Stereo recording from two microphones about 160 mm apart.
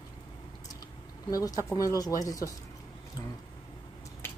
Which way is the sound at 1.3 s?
25° left (ahead or behind).